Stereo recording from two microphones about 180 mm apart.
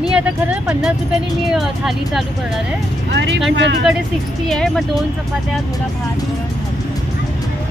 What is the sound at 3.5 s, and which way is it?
Speech, 75° right (ahead or behind).